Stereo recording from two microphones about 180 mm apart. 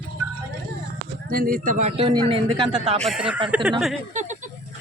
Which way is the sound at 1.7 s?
40° right (ahead or behind).